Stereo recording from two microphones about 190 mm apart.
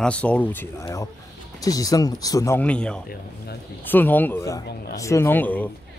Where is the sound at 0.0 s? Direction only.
5° left (ahead or behind).